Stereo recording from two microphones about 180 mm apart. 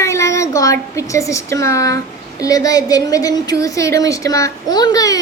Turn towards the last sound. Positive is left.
turn(degrees=20)  # may be behind; listen again after turning